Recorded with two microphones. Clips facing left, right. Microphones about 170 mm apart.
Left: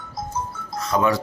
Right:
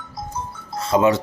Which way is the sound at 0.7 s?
30° right (ahead or behind).